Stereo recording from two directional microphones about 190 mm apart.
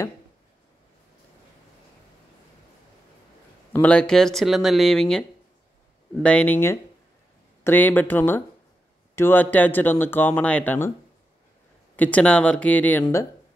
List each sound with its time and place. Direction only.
3.8 s speech: 5° left (ahead or behind)
6.2 s speech: 5° left (ahead or behind)
12.0 s speech: 5° left (ahead or behind)